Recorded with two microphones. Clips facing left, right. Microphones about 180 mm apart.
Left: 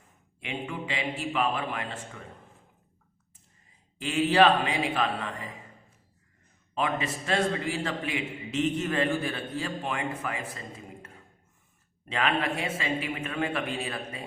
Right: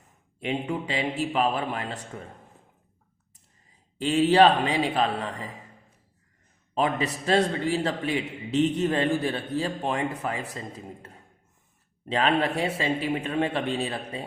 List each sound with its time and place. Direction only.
0.3 s a man's voice: 35° right (ahead or behind)
3.9 s a man's voice: 35° right (ahead or behind)
6.7 s a man's voice: 35° right (ahead or behind)